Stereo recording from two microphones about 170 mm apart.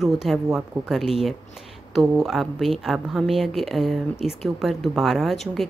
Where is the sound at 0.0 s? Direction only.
Centre (ahead or behind).